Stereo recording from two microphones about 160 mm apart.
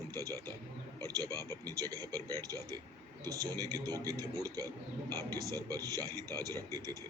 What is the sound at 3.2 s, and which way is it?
A man's voice, 20° right (ahead or behind).